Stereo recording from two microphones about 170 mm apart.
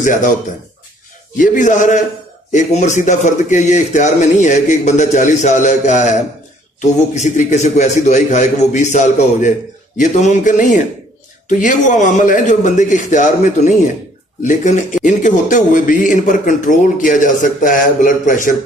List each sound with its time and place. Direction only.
0.0 s speech: 50° left (ahead or behind)
1.4 s speech: 50° left (ahead or behind)